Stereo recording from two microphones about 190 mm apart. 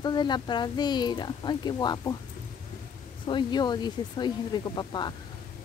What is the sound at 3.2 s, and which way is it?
Speech, 25° left (ahead or behind).